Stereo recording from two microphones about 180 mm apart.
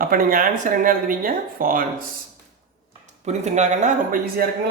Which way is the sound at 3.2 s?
40° right (ahead or behind).